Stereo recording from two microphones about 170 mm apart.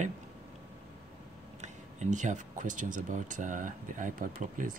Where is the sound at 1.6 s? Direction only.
45° right (ahead or behind).